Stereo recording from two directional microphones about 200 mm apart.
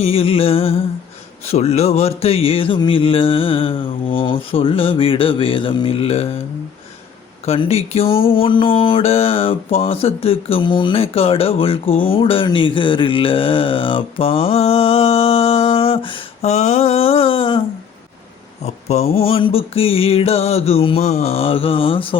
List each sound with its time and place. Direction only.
0.0 s music: 30° left (ahead or behind)
7.4 s music: 30° left (ahead or behind)
12.0 s mantra: 25° left (ahead or behind)
18.6 s music: 30° left (ahead or behind)